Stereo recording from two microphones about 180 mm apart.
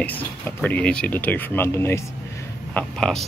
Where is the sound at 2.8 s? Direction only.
5° left (ahead or behind).